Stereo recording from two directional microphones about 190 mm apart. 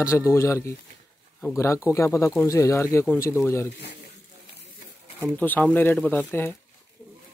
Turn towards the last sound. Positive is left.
turn(degrees=10)  # may be behind; listen again after turning